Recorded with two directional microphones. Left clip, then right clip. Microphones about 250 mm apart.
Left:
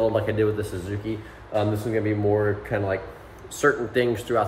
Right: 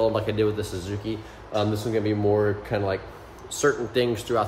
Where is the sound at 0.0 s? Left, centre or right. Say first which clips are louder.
Left 1 dB; centre.